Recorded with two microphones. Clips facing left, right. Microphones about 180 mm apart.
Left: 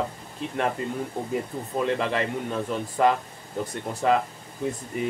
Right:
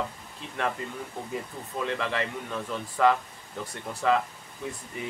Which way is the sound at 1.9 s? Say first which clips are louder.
Left 4 dB; 40° left (ahead or behind).